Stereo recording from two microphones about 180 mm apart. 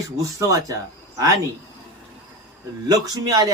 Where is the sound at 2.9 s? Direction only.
20° right (ahead or behind).